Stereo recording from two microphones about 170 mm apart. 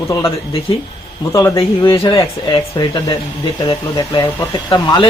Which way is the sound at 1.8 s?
30° left (ahead or behind).